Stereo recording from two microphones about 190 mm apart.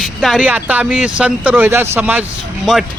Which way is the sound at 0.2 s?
5° right (ahead or behind).